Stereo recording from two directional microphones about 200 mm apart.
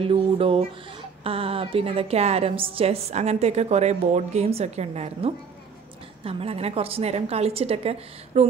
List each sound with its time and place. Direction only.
0.0 s a woman's voice: 25° right (ahead or behind)